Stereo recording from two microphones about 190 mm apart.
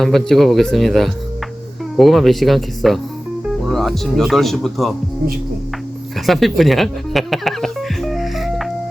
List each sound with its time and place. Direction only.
0.0 s speech: centre (ahead or behind)
6.1 s music: centre (ahead or behind)